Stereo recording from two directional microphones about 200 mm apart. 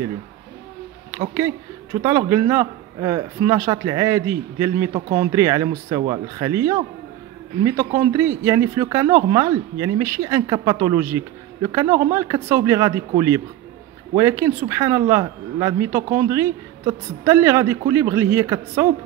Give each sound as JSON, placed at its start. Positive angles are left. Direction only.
{"t": 1.1, "sound": "speech", "side_deg": -15}